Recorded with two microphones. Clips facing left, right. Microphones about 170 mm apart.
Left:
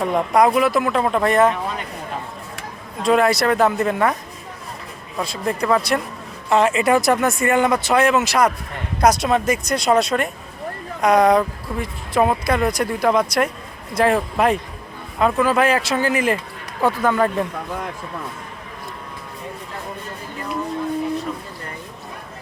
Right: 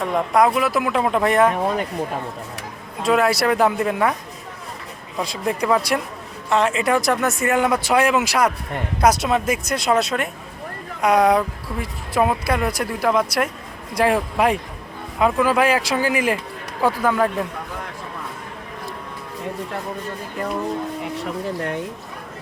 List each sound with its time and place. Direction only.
0.0 s speech: centre (ahead or behind)
3.0 s speech: 5° right (ahead or behind)
5.2 s speech: 15° right (ahead or behind)
6.5 s speech: 5° left (ahead or behind)
21.2 s speech: 80° right